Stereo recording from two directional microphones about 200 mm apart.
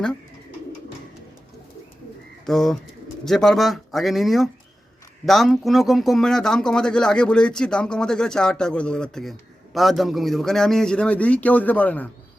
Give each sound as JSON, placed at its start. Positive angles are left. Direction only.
{"t": 2.5, "sound": "speech", "side_deg": 0}